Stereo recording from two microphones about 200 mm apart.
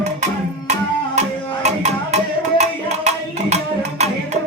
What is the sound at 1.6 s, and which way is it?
Music, 35° right (ahead or behind).